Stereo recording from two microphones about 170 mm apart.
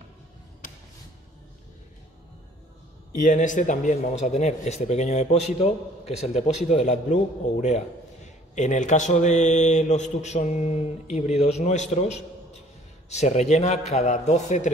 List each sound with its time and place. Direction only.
3.2 s a man's voice: 50° left (ahead or behind)